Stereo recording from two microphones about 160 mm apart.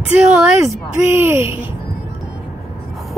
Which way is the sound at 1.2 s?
15° right (ahead or behind).